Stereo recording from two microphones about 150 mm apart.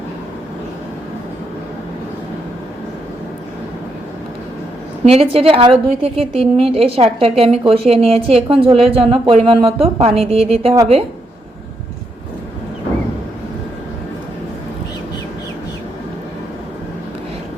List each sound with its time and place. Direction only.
5.0 s a woman's voice: 45° right (ahead or behind)